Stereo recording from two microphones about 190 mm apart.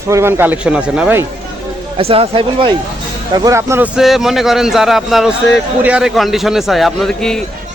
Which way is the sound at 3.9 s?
Centre (ahead or behind).